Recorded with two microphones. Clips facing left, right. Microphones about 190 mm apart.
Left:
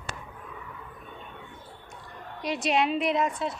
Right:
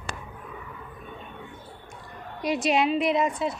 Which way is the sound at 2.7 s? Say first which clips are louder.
Right 2 dB; 5° right (ahead or behind).